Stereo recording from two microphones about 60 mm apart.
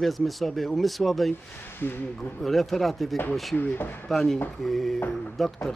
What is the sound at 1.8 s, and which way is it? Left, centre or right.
Speech, left.